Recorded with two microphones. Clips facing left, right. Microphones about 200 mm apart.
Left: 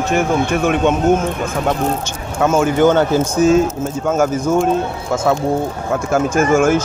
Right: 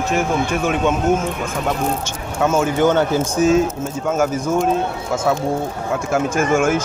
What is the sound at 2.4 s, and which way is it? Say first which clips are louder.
Speech: left 3 dB; 55° left (ahead or behind).